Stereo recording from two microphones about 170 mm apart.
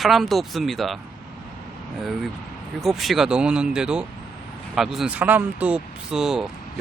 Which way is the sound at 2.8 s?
Centre (ahead or behind).